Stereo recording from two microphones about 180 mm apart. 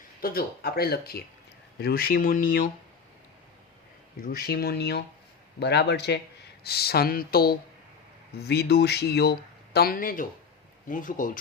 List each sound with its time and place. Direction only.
0.2 s speech: 55° left (ahead or behind)
4.2 s speech: 55° left (ahead or behind)